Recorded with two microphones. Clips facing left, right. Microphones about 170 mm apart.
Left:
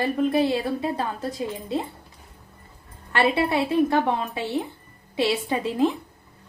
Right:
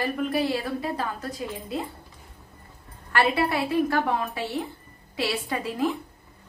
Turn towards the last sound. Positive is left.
turn(degrees=20)  # may be behind; listen again after turning